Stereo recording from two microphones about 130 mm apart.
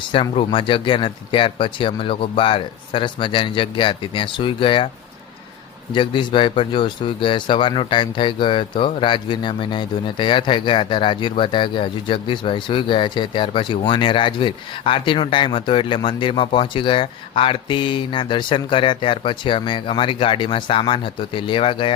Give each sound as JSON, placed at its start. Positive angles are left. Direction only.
{"t": 0.0, "sound": "speech", "side_deg": 40}
{"t": 5.9, "sound": "speech", "side_deg": 40}